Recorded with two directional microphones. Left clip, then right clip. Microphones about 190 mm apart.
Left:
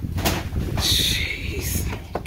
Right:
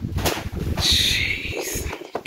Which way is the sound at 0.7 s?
10° left (ahead or behind).